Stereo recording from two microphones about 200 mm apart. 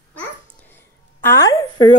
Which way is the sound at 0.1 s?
10° left (ahead or behind).